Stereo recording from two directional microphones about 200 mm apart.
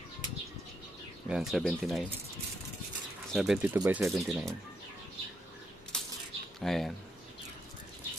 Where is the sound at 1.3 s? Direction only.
Centre (ahead or behind).